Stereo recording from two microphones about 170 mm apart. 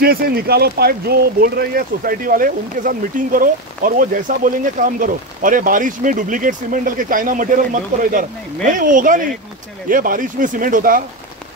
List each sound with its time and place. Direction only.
0.0 s speech: 65° right (ahead or behind)